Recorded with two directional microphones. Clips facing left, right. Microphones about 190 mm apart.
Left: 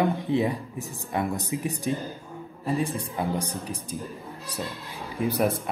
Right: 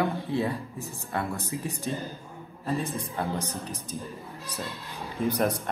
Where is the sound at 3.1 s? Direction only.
15° left (ahead or behind).